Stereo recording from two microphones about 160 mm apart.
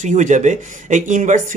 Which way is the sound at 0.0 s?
50° right (ahead or behind).